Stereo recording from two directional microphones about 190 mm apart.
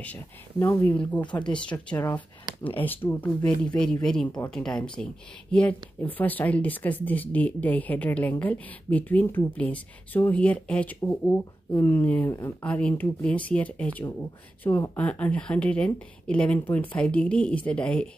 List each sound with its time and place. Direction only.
0.0 s speech: 10° left (ahead or behind)
1.2 s speech: 25° left (ahead or behind)
1.5 s speech: 5° left (ahead or behind)